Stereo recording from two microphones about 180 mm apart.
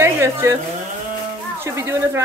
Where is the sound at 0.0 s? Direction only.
15° right (ahead or behind).